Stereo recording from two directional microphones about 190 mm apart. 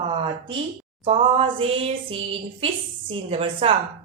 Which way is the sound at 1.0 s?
30° right (ahead or behind).